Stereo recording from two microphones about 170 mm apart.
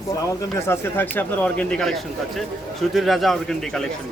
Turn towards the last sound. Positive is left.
turn(degrees=0)  # may be behind; listen again after turning